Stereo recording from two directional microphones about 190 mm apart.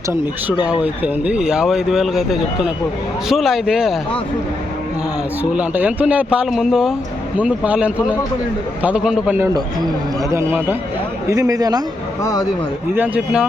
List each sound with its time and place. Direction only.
0.6 s speech: 5° right (ahead or behind)
5.4 s speech: 10° right (ahead or behind)
9.6 s speech: 20° right (ahead or behind)
12.2 s a man's voice: 15° left (ahead or behind)
12.9 s speech: 10° right (ahead or behind)